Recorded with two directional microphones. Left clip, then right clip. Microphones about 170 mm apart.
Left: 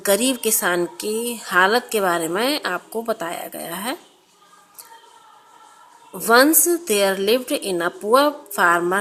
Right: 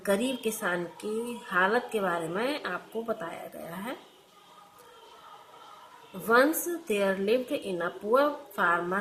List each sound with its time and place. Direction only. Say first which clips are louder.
0.0 s a woman's voice: left 9 dB; 45° left (ahead or behind)
6.2 s a woman's voice: left 9 dB; 45° left (ahead or behind)